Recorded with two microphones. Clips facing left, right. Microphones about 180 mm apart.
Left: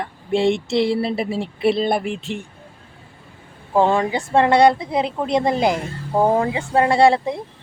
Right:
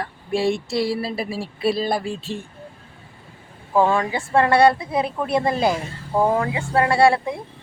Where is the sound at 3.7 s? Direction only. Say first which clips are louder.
Left 2 dB; 25° left (ahead or behind).